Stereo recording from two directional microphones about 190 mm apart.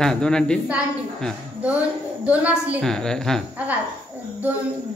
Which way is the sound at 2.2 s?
5° right (ahead or behind).